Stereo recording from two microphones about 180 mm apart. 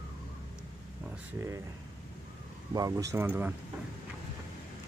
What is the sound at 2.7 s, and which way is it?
Speech, 20° right (ahead or behind).